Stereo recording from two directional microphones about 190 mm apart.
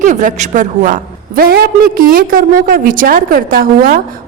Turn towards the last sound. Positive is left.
turn(degrees=-50)  # may be behind; listen again after turning